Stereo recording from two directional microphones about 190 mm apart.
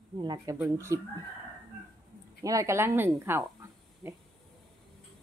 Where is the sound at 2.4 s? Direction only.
15° right (ahead or behind).